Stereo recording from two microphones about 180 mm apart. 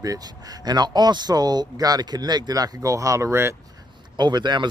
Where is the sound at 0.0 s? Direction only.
20° right (ahead or behind).